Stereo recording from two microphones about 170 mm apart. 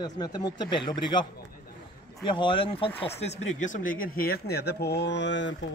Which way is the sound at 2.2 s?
30° left (ahead or behind).